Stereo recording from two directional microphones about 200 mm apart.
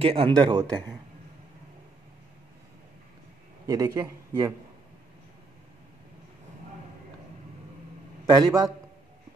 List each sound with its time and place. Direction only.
0.0 s speech: 30° right (ahead or behind)
3.6 s a man's voice: 20° right (ahead or behind)
8.3 s speech: 20° right (ahead or behind)